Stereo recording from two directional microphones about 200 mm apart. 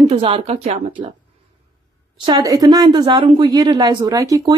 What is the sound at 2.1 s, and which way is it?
Speech, 20° right (ahead or behind).